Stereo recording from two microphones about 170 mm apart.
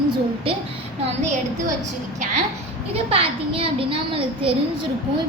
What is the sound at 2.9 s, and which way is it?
A child's voice, 35° right (ahead or behind).